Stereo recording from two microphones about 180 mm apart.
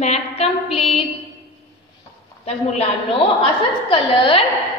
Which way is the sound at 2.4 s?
35° left (ahead or behind).